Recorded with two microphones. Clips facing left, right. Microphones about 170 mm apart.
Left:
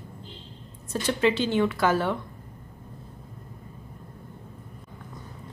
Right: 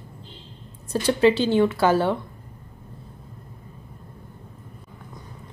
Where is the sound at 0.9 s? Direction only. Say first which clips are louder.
Right 5 dB; 35° right (ahead or behind).